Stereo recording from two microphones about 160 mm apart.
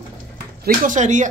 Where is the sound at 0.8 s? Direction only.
50° right (ahead or behind).